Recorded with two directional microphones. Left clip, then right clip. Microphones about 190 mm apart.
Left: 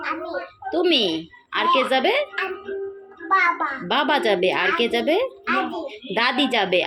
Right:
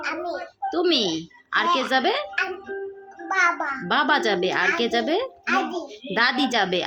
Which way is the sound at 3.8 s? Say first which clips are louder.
Left 1 dB; 20° right (ahead or behind).